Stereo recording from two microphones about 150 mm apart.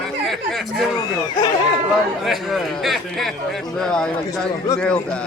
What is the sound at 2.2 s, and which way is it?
A man's voice, centre (ahead or behind).